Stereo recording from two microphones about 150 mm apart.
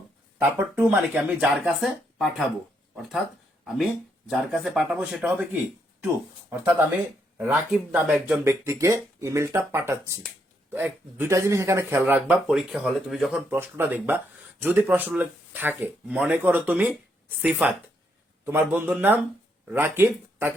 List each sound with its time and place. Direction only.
0.3 s speech: 10° right (ahead or behind)
3.6 s speech: centre (ahead or behind)
7.3 s speech: 10° right (ahead or behind)
8.4 s speech: 20° right (ahead or behind); by 13.4 s centre (ahead or behind)
13.5 s speech: 15° right (ahead or behind)